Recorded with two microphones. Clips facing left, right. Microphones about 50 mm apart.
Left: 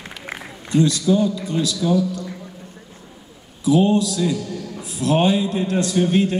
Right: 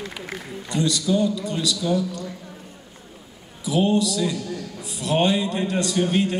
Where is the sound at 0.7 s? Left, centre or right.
Centre.